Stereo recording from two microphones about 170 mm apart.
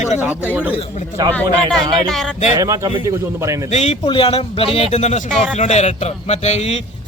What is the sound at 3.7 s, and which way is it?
A man's voice, 40° left (ahead or behind).